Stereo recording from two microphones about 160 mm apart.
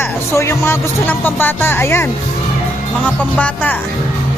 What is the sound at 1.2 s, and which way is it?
Speech, 15° left (ahead or behind).